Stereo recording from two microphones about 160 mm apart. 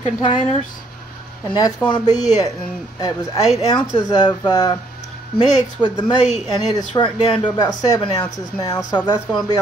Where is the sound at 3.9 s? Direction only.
25° left (ahead or behind).